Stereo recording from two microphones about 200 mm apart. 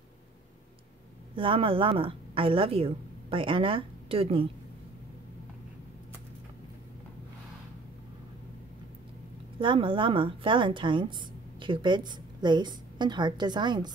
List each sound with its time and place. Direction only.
1.3 s a woman's voice: 25° right (ahead or behind)
9.6 s a woman's voice: 25° right (ahead or behind)